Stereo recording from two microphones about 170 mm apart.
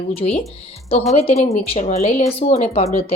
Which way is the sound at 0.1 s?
35° left (ahead or behind).